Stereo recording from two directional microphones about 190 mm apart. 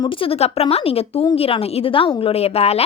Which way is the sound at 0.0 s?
30° left (ahead or behind).